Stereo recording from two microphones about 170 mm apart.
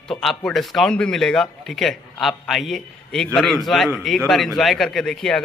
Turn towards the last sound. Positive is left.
turn(degrees=5)  # may be behind; listen again after turning